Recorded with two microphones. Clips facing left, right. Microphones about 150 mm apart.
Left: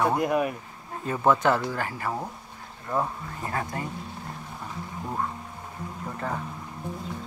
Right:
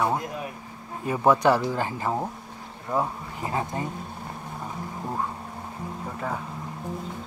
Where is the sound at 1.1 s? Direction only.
15° right (ahead or behind).